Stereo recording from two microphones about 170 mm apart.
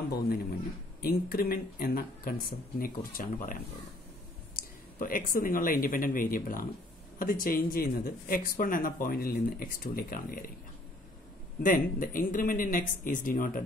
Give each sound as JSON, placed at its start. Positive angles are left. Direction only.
{"t": 1.0, "sound": "speech", "side_deg": 60}
{"t": 4.6, "sound": "speech", "side_deg": 55}
{"t": 11.6, "sound": "speech", "side_deg": 55}